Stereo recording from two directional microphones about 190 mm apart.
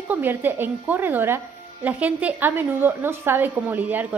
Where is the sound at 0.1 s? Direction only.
10° right (ahead or behind).